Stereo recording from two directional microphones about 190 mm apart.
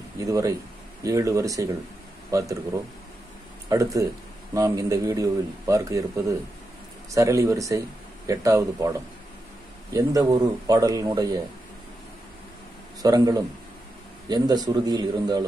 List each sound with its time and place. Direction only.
0.2 s a man's voice: 15° right (ahead or behind)
3.6 s a man's voice: 15° right (ahead or behind)
9.9 s speech: 15° right (ahead or behind)
13.0 s speech: 20° right (ahead or behind)